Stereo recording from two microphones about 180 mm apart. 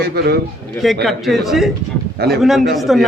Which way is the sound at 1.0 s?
Centre (ahead or behind).